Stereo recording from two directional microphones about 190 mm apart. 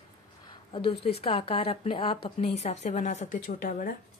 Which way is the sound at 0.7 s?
30° left (ahead or behind).